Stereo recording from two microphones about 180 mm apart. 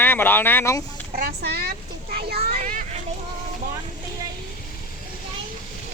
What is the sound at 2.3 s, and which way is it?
Vehicle, 55° right (ahead or behind).